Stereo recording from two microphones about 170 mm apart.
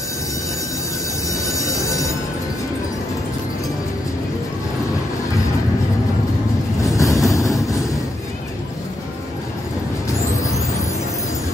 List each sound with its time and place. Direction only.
1.3 s train: 20° left (ahead or behind)
6.8 s vehicle: 20° left (ahead or behind)
10.1 s vehicle: 20° left (ahead or behind)